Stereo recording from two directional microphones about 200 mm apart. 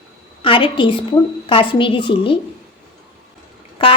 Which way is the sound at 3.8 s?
25° left (ahead or behind).